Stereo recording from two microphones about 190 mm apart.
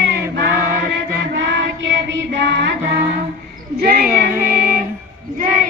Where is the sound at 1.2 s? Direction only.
70° right (ahead or behind).